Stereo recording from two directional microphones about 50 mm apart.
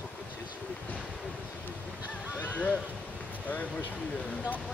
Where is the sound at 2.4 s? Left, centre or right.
Left.